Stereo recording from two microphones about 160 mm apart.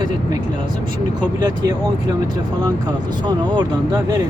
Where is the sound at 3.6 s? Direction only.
25° right (ahead or behind).